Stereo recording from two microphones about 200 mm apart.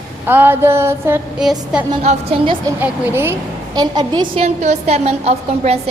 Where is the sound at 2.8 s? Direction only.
10° right (ahead or behind); by 5.8 s 30° right (ahead or behind).